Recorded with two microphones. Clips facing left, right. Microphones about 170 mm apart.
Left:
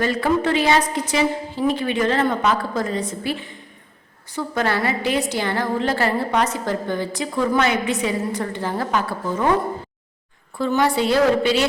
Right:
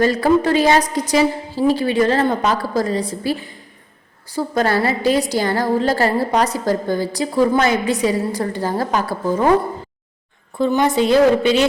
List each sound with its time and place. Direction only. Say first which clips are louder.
0.0 s a woman's voice: right 5 dB; 40° right (ahead or behind)
10.6 s a woman's voice: right 3 dB; 20° right (ahead or behind)